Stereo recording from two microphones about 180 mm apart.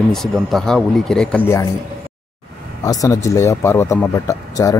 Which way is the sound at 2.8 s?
20° left (ahead or behind).